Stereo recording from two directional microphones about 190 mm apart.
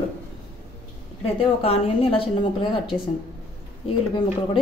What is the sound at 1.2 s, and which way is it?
A woman's voice, 30° left (ahead or behind).